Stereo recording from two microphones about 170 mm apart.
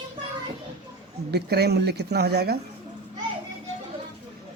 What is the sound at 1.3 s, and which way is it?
Speech, 70° right (ahead or behind).